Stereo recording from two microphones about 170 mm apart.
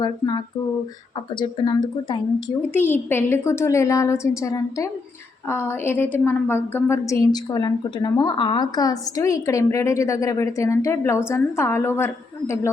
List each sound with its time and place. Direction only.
0.0 s speech: 25° left (ahead or behind)
2.7 s a woman's voice: 10° left (ahead or behind)